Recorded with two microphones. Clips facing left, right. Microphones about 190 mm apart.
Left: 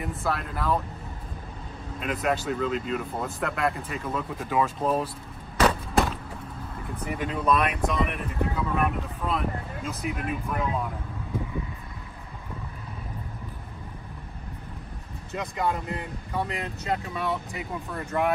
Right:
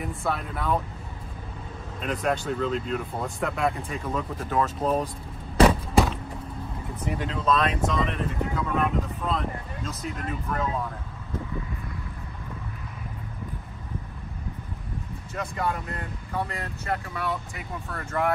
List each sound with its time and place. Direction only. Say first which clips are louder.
0.0 s speech: even; centre (ahead or behind)
2.0 s speech: even; 5° left (ahead or behind)
5.7 s a sound: right 3 dB; centre (ahead or behind)
7.1 s speech: even; 15° left (ahead or behind)
15.3 s speech: left 1 dB; 20° left (ahead or behind)